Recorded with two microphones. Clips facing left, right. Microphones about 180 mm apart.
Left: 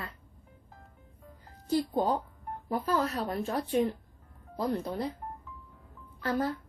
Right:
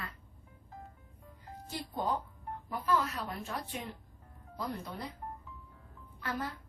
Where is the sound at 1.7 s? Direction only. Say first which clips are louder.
Left 8 dB; 35° left (ahead or behind).